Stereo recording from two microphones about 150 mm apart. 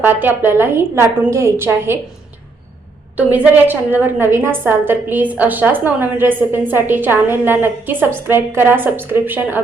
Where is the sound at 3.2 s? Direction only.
10° right (ahead or behind).